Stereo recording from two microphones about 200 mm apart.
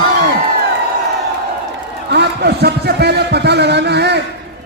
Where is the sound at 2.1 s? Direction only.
55° right (ahead or behind).